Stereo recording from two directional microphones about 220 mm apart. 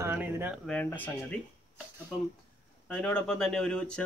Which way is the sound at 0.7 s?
5° left (ahead or behind).